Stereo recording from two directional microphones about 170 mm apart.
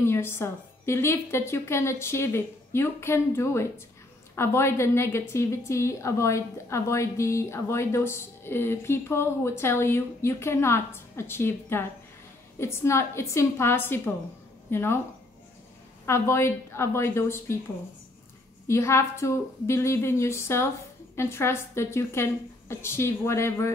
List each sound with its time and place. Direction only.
0.0 s a woman's voice: 15° left (ahead or behind)
16.1 s a woman's voice: 15° left (ahead or behind)
18.7 s a woman's voice: 15° left (ahead or behind)